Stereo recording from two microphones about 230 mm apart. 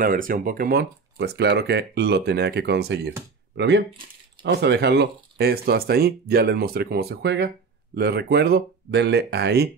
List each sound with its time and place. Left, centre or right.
0.0 s speech: right